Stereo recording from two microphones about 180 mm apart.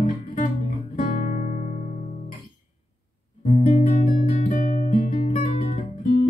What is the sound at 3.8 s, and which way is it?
Music, 45° left (ahead or behind).